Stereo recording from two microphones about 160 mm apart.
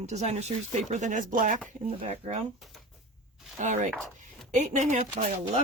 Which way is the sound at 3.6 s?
50° right (ahead or behind).